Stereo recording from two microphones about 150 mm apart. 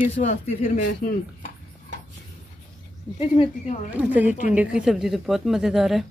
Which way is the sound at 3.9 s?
10° right (ahead or behind).